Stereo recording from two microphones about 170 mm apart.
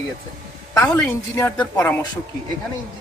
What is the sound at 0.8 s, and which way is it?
A man's voice, 15° left (ahead or behind).